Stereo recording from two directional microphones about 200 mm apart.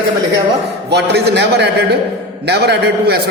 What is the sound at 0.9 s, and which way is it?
A man's voice, 55° right (ahead or behind).